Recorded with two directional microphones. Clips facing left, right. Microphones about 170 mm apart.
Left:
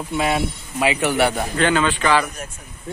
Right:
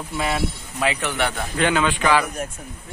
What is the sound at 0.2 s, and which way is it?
Speech, 10° left (ahead or behind).